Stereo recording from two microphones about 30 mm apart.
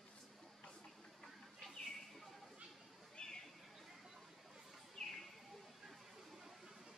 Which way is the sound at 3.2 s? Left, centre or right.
Left.